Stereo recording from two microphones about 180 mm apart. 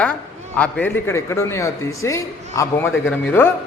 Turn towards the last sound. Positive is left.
turn(degrees=10)  # may be behind; listen again after turning